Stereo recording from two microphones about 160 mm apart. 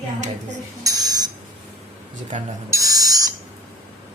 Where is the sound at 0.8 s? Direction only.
25° right (ahead or behind).